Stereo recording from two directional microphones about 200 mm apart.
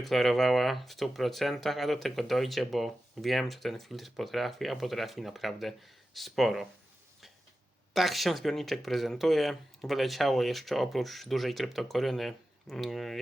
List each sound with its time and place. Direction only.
0.0 s speech: centre (ahead or behind)
7.9 s speech: centre (ahead or behind)